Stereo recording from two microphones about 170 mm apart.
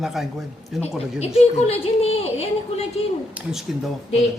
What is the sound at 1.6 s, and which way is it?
A woman's voice, 35° left (ahead or behind).